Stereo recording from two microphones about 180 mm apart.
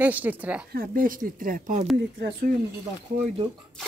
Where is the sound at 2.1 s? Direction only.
70° right (ahead or behind).